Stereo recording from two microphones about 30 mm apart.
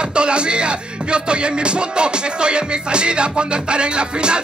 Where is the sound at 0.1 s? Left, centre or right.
Right.